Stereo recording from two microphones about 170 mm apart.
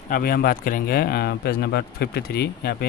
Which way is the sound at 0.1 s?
60° left (ahead or behind).